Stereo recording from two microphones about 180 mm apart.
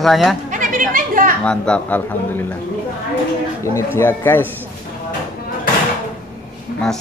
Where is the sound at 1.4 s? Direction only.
5° left (ahead or behind).